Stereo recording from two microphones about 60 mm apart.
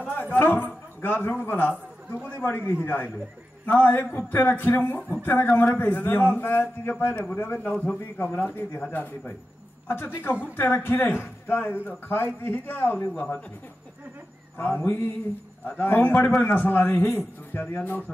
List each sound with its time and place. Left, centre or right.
0.1 s a man's voice: left
14.6 s a man's voice: left